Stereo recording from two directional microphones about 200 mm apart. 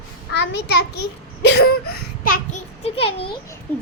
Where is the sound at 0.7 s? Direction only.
55° left (ahead or behind).